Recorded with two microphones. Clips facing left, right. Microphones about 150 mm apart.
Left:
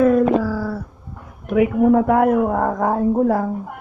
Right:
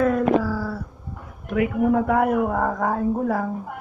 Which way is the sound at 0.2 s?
5° left (ahead or behind).